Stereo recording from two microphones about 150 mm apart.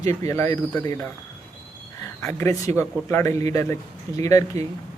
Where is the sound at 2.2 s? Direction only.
15° left (ahead or behind).